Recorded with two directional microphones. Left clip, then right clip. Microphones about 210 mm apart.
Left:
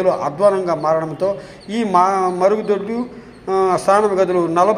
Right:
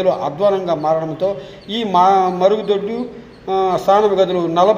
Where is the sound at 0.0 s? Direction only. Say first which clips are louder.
Left 1 dB; 25° left (ahead or behind).